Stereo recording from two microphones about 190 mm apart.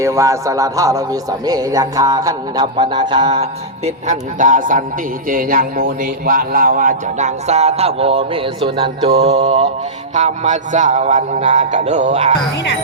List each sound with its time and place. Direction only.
0.0 s a man's voice: 15° right (ahead or behind)
3.8 s a man's voice: 40° right (ahead or behind)